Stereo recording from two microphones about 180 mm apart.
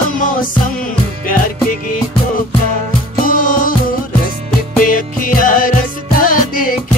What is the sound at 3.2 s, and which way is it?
Music, 50° left (ahead or behind).